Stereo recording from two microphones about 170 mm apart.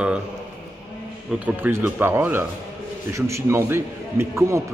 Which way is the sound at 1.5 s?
10° right (ahead or behind).